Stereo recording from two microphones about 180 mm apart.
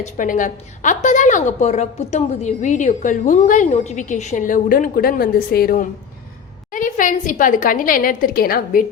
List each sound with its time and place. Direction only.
0.0 s a woman's voice: 45° left (ahead or behind)